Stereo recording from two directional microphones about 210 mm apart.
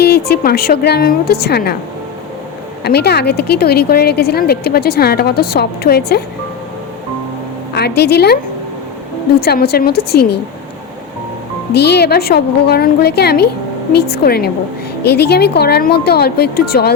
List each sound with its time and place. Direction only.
0.0 s a woman's voice: 50° left (ahead or behind)
2.8 s a woman's voice: 50° left (ahead or behind)
7.7 s a woman's voice: 50° left (ahead or behind)
9.4 s a woman's voice: 50° left (ahead or behind)
11.7 s a woman's voice: 50° left (ahead or behind)